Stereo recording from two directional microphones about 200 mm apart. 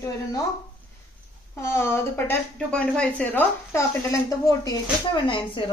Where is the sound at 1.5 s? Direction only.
15° left (ahead or behind).